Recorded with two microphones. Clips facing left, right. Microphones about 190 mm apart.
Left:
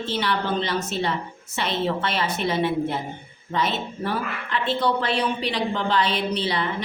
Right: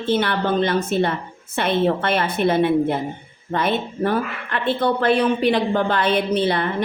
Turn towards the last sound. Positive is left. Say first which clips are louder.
# right 6 dB
turn(degrees=-55)  # may be behind; listen again after turning